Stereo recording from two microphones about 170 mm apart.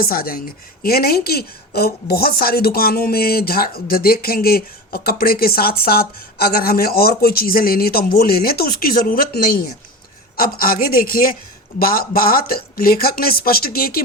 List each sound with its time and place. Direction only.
0.0 s a woman's voice: 60° left (ahead or behind)